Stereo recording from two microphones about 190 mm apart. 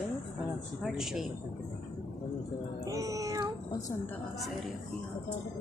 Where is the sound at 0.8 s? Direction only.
Centre (ahead or behind).